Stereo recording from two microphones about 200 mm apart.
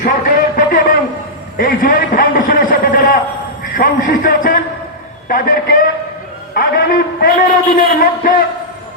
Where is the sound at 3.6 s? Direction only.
45° left (ahead or behind).